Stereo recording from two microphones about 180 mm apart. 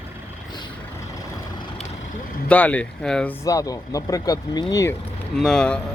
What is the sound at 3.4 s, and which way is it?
Speech, 20° left (ahead or behind).